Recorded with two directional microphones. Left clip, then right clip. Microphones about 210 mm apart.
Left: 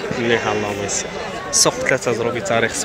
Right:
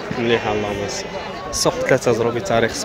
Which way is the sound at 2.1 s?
15° right (ahead or behind).